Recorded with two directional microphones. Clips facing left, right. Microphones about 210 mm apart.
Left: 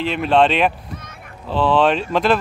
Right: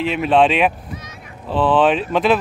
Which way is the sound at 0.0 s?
Centre (ahead or behind).